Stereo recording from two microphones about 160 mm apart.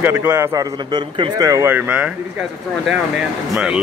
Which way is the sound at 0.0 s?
15° right (ahead or behind).